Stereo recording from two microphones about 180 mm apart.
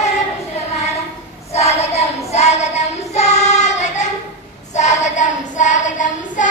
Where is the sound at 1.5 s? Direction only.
35° left (ahead or behind).